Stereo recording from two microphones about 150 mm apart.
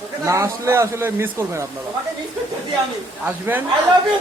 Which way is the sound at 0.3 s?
20° right (ahead or behind).